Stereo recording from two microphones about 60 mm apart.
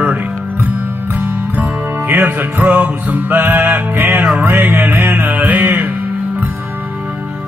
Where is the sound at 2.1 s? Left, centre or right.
Right.